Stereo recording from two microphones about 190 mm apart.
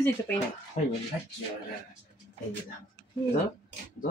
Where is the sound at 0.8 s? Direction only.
35° left (ahead or behind).